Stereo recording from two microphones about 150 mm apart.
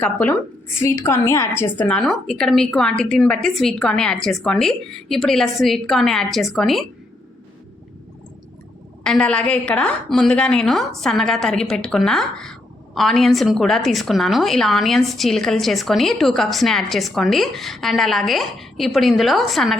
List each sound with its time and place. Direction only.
0.0 s a woman's voice: 10° left (ahead or behind)
2.0 s a woman's voice: centre (ahead or behind)
9.0 s a woman's voice: 5° left (ahead or behind)